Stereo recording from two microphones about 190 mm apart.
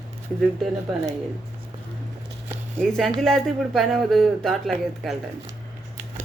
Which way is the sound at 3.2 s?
Centre (ahead or behind).